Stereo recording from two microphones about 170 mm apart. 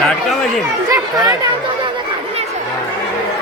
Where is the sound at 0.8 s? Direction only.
25° right (ahead or behind).